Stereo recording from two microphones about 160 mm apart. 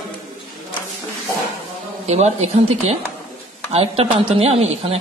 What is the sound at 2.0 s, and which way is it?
Speech, 45° right (ahead or behind).